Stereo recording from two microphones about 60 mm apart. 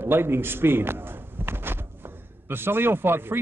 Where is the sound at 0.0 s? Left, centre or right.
Right.